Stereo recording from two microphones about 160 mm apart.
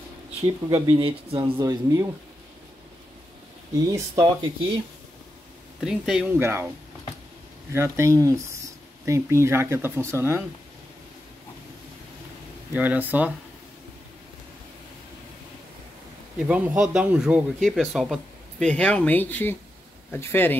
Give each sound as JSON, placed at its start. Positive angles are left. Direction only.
{"t": 0.7, "sound": "speech", "side_deg": -25}
{"t": 1.6, "sound": "speech", "side_deg": -20}
{"t": 3.7, "sound": "speech", "side_deg": -20}
{"t": 5.8, "sound": "speech", "side_deg": 0}
{"t": 6.3, "sound": "speech", "side_deg": -15}
{"t": 7.7, "sound": "speech", "side_deg": -15}
{"t": 12.7, "sound": "speech", "side_deg": -10}
{"t": 16.3, "sound": "speech", "side_deg": -10}